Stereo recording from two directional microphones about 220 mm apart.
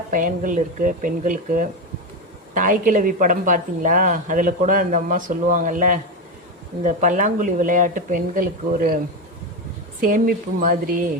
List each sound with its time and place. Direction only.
0.1 s speech: 35° right (ahead or behind)
10.0 s speech: 40° right (ahead or behind)